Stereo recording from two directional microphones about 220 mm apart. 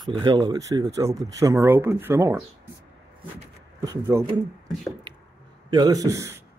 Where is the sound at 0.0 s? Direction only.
20° right (ahead or behind).